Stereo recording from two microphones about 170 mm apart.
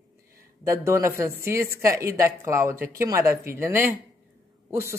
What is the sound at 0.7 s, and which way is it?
Speech, 15° right (ahead or behind).